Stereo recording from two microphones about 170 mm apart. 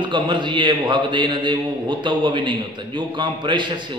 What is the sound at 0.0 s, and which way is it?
A man's voice, 25° right (ahead or behind).